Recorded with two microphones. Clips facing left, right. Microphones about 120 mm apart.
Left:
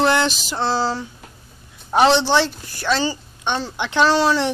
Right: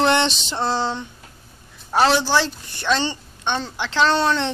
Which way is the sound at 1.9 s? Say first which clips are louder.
Left 3 dB; 15° left (ahead or behind).